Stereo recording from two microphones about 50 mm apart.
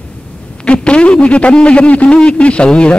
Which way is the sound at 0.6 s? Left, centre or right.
Left.